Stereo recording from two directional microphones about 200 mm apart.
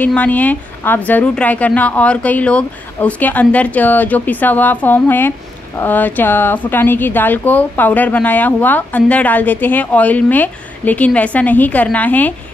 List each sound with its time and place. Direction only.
0.0 s a woman's voice: 5° left (ahead or behind)